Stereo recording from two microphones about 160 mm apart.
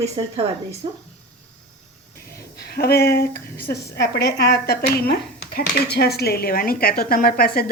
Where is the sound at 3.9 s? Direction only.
90° left.